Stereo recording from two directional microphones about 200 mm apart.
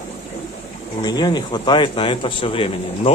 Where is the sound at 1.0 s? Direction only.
20° left (ahead or behind).